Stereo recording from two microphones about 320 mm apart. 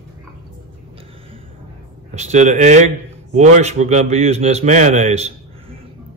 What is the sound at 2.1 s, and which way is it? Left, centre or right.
A man's voice, right.